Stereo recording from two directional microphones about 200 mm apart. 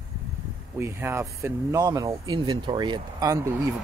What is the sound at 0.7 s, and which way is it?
Speech, 10° right (ahead or behind).